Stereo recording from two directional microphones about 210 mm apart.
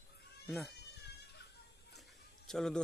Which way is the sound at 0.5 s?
Centre (ahead or behind).